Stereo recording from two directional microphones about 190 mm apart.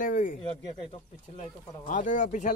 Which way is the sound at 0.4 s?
30° left (ahead or behind).